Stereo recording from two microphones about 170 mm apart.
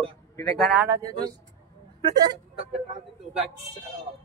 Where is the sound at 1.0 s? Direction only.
25° right (ahead or behind).